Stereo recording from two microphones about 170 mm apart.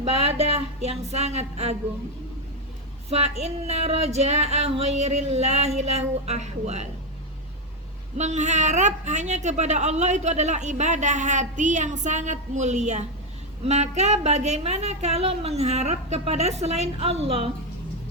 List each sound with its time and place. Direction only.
0.0 s a woman's voice: 35° right (ahead or behind)
3.1 s a woman's voice: 40° right (ahead or behind)
8.2 s a woman's voice: 45° right (ahead or behind)